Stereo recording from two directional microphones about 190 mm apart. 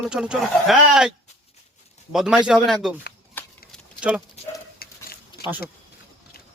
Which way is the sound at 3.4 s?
10° left (ahead or behind).